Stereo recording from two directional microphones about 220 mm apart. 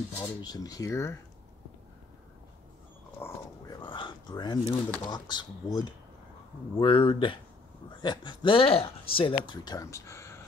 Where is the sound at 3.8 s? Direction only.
20° left (ahead or behind).